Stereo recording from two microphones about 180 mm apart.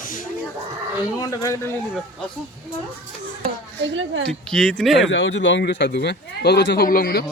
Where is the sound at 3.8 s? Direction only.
90° right.